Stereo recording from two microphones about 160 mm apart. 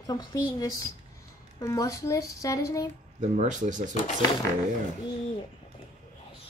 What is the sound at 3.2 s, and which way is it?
Speech, 50° right (ahead or behind).